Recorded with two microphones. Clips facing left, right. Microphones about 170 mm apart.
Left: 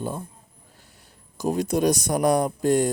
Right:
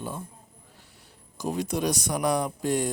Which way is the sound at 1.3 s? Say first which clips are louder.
Left 5 dB; 45° left (ahead or behind).